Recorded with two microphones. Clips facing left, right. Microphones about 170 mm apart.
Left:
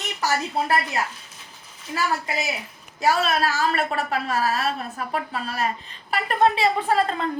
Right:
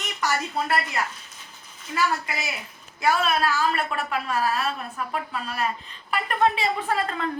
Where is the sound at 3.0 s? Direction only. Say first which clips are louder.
Left 1 dB; 35° left (ahead or behind).